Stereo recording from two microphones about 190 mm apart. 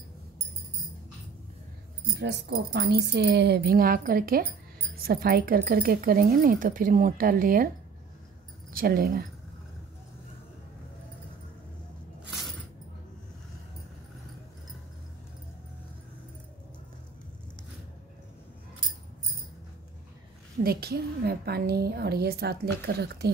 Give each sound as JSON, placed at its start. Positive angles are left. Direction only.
{"t": 2.1, "sound": "a woman's voice", "side_deg": -65}
{"t": 8.7, "sound": "speech", "side_deg": -50}
{"t": 20.6, "sound": "a woman's voice", "side_deg": -55}